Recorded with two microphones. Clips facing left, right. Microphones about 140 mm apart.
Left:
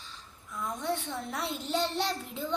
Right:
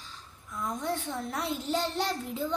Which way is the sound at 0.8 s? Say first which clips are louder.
Left 1 dB; 45° right (ahead or behind).